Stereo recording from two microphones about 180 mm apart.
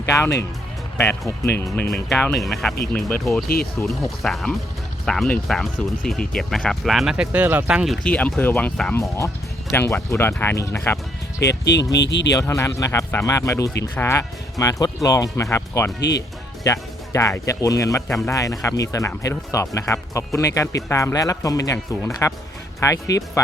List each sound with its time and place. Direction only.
0.1 s speech: 15° left (ahead or behind)
1.5 s speech: 15° left (ahead or behind); by 7.9 s 5° right (ahead or behind)
8.0 s speech: 5° left (ahead or behind)
11.4 s speech: 75° left (ahead or behind)
12.3 s speech: 15° left (ahead or behind)
16.0 s speech: 70° left (ahead or behind)
16.6 s speech: 20° left (ahead or behind)